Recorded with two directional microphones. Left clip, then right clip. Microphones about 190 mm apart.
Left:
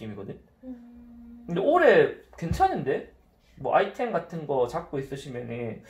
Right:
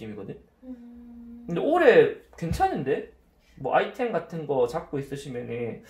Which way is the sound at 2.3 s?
15° right (ahead or behind).